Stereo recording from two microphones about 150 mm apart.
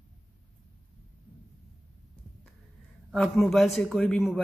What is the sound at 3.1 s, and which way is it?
A man's voice, 5° left (ahead or behind).